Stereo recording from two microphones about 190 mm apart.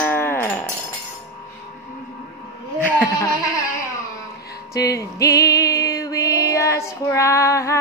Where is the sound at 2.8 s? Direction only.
10° left (ahead or behind).